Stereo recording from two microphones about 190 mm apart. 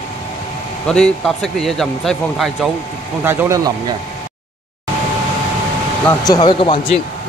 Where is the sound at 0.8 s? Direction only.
5° left (ahead or behind).